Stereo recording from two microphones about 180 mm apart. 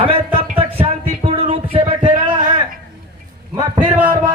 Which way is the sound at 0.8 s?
35° right (ahead or behind).